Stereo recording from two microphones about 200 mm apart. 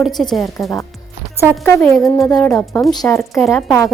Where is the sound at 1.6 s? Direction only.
15° left (ahead or behind).